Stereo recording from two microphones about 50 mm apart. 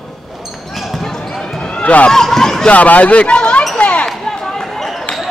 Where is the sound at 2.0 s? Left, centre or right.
Centre.